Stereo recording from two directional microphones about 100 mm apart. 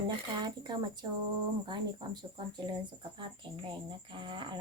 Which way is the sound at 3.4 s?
55° right (ahead or behind).